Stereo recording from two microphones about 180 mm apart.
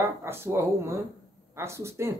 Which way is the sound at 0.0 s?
15° right (ahead or behind).